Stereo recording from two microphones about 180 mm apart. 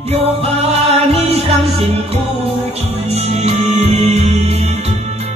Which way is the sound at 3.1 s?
35° right (ahead or behind).